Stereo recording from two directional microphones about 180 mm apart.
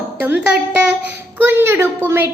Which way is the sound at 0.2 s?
10° right (ahead or behind).